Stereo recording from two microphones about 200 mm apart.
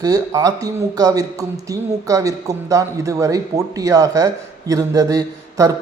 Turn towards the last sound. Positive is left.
turn(degrees=-15)  # may be behind; listen again after turning